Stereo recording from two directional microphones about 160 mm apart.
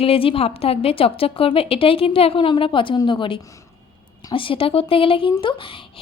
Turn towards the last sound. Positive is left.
turn(degrees=30)  # may be behind; listen again after turning